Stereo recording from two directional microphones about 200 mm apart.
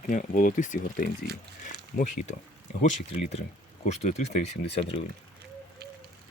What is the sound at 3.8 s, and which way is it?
Speech, 35° left (ahead or behind).